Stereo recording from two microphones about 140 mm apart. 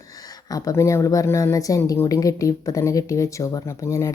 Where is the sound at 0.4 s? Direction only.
25° left (ahead or behind).